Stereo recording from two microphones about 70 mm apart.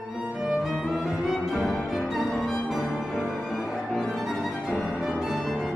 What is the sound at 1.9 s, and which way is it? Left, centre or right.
Music, centre.